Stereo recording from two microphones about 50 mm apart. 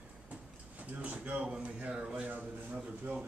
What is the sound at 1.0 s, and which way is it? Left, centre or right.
Speech, right.